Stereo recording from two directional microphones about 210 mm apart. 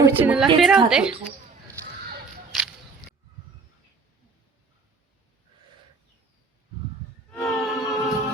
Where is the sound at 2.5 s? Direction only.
Centre (ahead or behind).